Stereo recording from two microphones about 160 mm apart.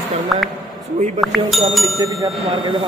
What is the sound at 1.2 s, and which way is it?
Speech, centre (ahead or behind).